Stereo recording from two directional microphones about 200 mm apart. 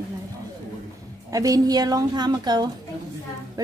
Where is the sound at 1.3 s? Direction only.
15° right (ahead or behind).